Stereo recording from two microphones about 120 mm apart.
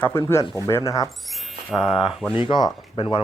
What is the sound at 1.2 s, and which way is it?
Speech, centre (ahead or behind).